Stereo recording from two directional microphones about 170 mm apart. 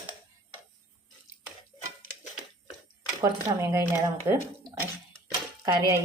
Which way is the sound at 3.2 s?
15° right (ahead or behind).